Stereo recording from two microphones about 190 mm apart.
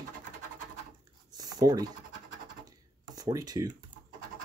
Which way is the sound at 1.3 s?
20° right (ahead or behind).